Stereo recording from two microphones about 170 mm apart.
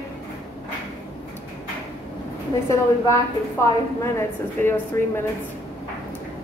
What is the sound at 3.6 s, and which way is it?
A woman's voice, 15° left (ahead or behind).